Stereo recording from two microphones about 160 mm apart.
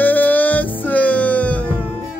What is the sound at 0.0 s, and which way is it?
Music, 10° left (ahead or behind).